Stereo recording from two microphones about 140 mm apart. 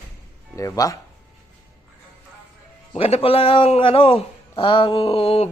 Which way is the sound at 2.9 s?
45° left (ahead or behind).